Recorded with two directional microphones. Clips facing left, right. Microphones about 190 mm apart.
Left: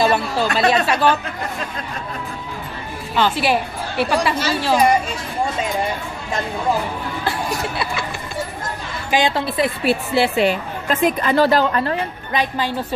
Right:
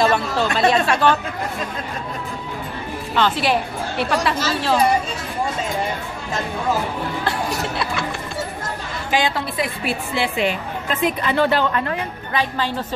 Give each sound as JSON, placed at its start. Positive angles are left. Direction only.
{"t": 0.0, "sound": "speech", "side_deg": 5}
{"t": 3.2, "sound": "speech", "side_deg": 5}
{"t": 9.1, "sound": "a woman's voice", "side_deg": 25}
{"t": 12.3, "sound": "speech", "side_deg": 15}